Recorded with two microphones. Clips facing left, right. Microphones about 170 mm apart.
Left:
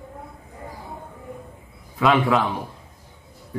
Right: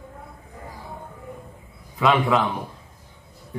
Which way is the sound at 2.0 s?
Centre (ahead or behind).